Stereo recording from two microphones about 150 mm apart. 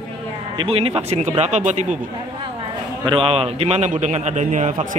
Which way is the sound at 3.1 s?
40° right (ahead or behind).